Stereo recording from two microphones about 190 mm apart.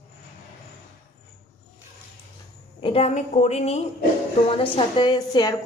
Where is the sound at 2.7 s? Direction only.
30° left (ahead or behind).